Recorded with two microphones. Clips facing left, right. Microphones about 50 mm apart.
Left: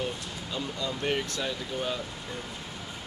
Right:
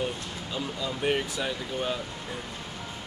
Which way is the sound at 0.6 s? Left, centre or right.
Centre.